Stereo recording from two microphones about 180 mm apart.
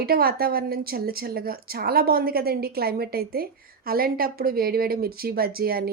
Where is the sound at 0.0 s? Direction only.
60° right (ahead or behind).